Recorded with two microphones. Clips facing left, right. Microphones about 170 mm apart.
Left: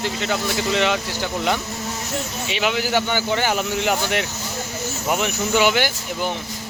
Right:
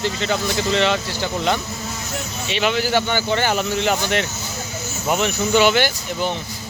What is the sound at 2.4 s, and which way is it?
Speech, 10° left (ahead or behind).